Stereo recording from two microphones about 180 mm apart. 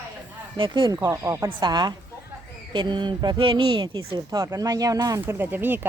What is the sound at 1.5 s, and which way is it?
Speech, 25° right (ahead or behind).